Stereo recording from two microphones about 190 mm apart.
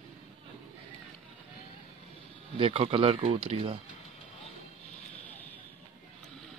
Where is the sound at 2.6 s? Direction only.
30° right (ahead or behind).